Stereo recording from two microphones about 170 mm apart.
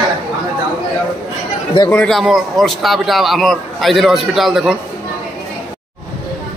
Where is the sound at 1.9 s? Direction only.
5° left (ahead or behind).